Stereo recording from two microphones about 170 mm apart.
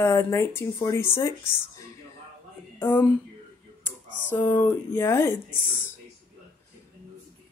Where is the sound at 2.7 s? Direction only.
10° left (ahead or behind).